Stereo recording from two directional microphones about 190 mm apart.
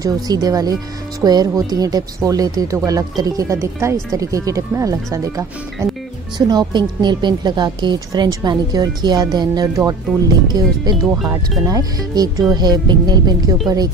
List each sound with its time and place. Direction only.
0.0 s a woman's voice: 20° right (ahead or behind)